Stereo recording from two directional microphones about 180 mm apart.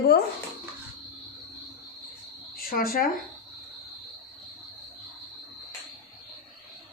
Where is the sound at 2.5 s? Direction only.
55° left (ahead or behind).